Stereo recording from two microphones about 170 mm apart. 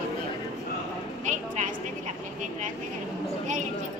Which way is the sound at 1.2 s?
45° right (ahead or behind).